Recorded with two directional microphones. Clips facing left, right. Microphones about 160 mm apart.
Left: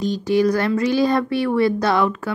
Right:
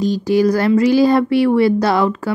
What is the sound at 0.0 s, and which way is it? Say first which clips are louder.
A woman's voice: right 3 dB; 35° right (ahead or behind).